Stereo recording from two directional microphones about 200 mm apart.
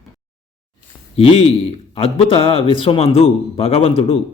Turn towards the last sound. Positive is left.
turn(degrees=30)  # may be behind; listen again after turning